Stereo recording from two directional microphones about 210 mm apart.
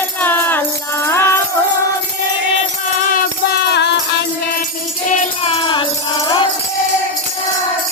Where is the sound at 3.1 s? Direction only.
45° left (ahead or behind).